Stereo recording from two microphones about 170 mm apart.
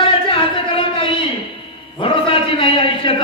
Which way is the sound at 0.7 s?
30° left (ahead or behind).